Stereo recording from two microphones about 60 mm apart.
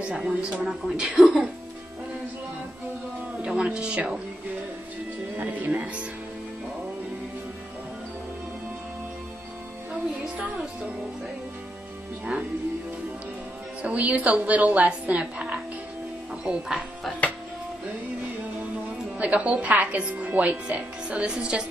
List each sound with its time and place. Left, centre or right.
0.0 s speech: centre
3.4 s speech: centre
5.4 s a woman's voice: right
10.2 s music: right
13.8 s a woman's voice: right
19.1 s a woman's voice: right